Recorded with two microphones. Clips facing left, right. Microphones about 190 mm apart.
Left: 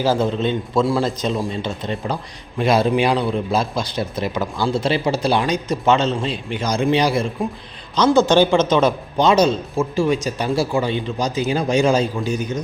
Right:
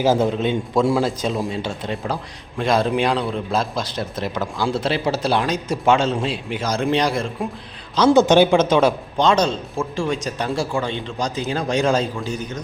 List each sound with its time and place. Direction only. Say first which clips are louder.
0.0 s a man's voice: right 1 dB; 20° right (ahead or behind); by 7.3 s centre (ahead or behind)
7.9 s a man's voice: right 1 dB; 15° right (ahead or behind)
9.1 s a man's voice: left 3 dB; 5° left (ahead or behind)